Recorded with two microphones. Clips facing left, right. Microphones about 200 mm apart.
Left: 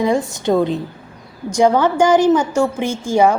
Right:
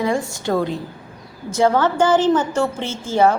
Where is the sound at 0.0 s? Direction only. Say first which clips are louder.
Left 4 dB; 20° left (ahead or behind).